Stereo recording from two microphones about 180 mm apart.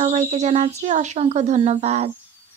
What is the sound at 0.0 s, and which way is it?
Speech, 40° right (ahead or behind).